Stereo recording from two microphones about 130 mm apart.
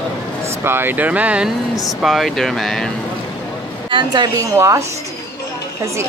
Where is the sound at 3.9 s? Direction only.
35° right (ahead or behind).